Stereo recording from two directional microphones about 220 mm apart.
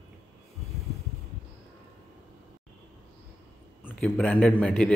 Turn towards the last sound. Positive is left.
turn(degrees=5)  # may be behind; listen again after turning